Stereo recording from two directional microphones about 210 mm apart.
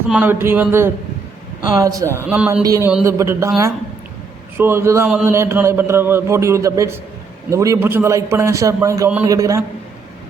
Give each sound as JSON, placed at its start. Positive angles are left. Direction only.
{"t": 0.1, "sound": "a man's voice", "side_deg": -10}
{"t": 4.5, "sound": "a man's voice", "side_deg": -10}